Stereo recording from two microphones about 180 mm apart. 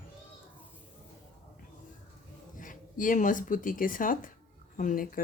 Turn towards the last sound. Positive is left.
turn(degrees=50)  # may be behind; listen again after turning